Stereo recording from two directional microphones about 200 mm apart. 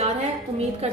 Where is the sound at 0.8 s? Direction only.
30° right (ahead or behind).